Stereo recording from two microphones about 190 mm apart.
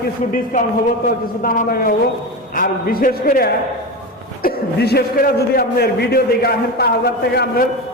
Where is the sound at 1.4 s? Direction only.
45° left (ahead or behind).